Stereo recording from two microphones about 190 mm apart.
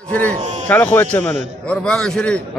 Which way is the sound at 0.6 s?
10° left (ahead or behind).